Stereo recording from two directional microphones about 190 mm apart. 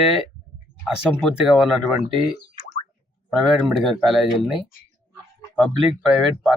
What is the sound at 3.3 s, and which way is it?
Speech, centre (ahead or behind).